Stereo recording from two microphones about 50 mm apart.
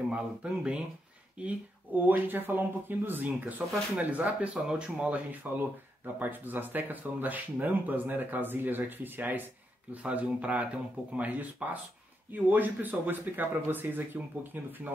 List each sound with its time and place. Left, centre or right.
0.1 s speech: right
2.0 s speech: right
4.6 s speech: centre
6.1 s speech: right
10.0 s speech: right